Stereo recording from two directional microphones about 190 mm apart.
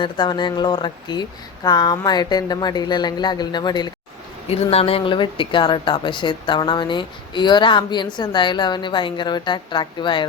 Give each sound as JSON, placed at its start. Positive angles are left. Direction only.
{"t": 0.0, "sound": "speech", "side_deg": 25}